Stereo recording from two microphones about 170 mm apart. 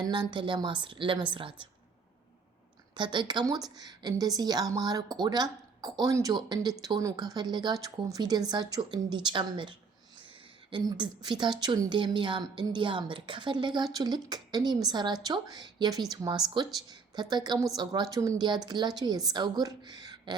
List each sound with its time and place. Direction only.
0.1 s a woman's voice: 30° right (ahead or behind)
2.9 s a woman's voice: 25° right (ahead or behind)